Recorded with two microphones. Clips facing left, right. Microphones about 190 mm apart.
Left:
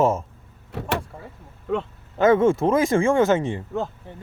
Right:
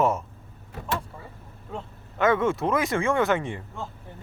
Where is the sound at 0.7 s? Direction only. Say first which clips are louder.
Left 4 dB; 75° left (ahead or behind).